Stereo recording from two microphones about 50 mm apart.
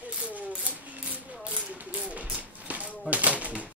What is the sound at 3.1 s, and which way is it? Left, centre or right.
Typewriter, right.